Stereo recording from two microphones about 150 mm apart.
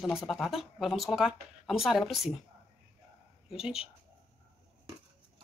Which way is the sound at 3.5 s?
5° right (ahead or behind).